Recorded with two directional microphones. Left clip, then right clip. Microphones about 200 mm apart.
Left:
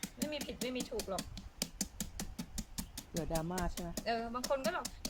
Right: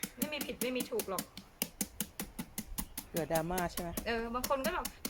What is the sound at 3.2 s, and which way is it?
Speech, 20° right (ahead or behind).